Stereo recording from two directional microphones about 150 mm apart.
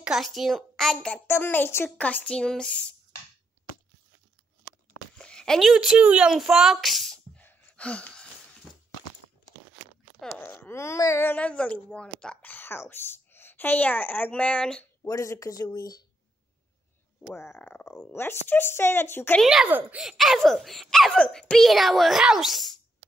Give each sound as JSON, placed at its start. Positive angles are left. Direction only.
{"t": 0.0, "sound": "speech", "side_deg": 0}
{"t": 1.2, "sound": "speech", "side_deg": 15}
{"t": 4.9, "sound": "a sound", "side_deg": 5}
{"t": 8.7, "sound": "a sound", "side_deg": -5}
{"t": 10.4, "sound": "speech", "side_deg": 15}
{"t": 15.0, "sound": "speech", "side_deg": 20}
{"t": 17.3, "sound": "speech", "side_deg": 15}
{"t": 19.4, "sound": "speech", "side_deg": -5}